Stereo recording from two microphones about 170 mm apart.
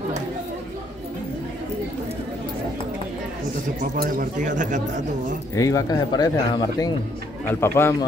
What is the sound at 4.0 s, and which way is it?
Speech, 50° right (ahead or behind).